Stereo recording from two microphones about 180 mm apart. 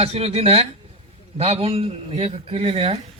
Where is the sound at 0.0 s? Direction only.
35° right (ahead or behind).